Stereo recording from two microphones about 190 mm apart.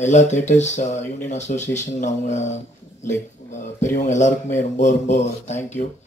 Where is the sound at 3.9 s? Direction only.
40° left (ahead or behind).